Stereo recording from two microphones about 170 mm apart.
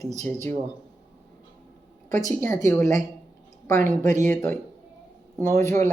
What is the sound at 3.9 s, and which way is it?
Speech, 45° right (ahead or behind).